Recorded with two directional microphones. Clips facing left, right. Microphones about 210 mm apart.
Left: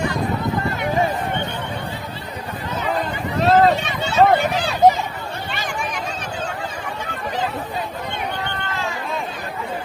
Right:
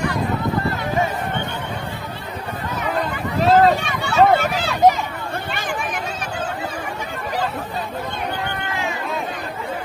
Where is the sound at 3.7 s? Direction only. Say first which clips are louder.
Even; 20° left (ahead or behind).